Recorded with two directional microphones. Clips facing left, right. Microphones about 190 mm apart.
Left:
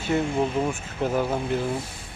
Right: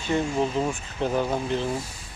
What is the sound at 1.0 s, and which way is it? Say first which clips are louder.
Speech: even; 5° left (ahead or behind).